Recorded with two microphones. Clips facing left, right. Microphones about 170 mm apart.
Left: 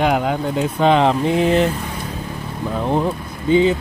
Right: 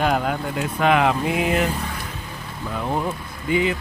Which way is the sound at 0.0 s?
15° left (ahead or behind).